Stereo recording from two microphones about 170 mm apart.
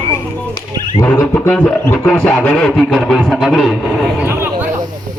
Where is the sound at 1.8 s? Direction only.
5° left (ahead or behind).